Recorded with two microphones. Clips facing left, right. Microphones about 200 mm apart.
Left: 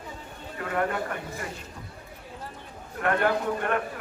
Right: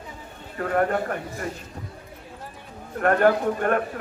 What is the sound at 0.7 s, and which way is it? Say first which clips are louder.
Speech: right 5 dB; 45° right (ahead or behind).